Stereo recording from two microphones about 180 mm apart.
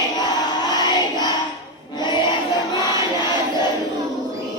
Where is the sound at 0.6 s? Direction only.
25° left (ahead or behind).